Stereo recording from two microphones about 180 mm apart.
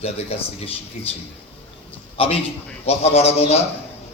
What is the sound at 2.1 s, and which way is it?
A man's voice, 30° left (ahead or behind).